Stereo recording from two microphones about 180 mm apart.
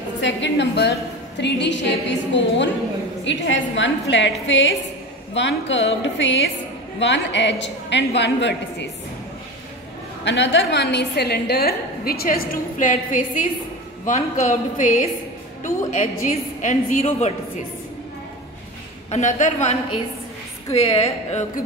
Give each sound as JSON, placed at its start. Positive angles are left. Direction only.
{"t": 0.2, "sound": "a woman's voice", "side_deg": 75}
{"t": 10.2, "sound": "a woman's voice", "side_deg": 80}
{"t": 19.0, "sound": "a man's voice", "side_deg": 40}